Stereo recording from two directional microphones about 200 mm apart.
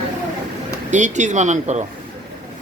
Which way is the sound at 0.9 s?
35° right (ahead or behind).